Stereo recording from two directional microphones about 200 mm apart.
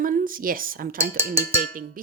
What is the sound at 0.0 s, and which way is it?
A woman's voice, 45° right (ahead or behind).